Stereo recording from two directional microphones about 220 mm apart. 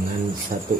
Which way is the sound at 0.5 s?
40° right (ahead or behind).